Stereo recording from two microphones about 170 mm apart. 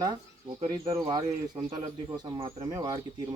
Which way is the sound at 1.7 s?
25° right (ahead or behind).